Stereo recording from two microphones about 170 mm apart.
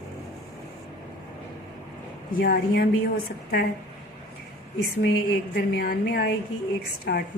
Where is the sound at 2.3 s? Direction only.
65° left (ahead or behind).